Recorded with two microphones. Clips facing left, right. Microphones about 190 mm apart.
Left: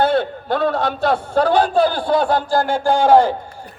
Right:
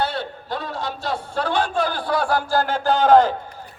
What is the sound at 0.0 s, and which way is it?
A man's voice, 55° left (ahead or behind).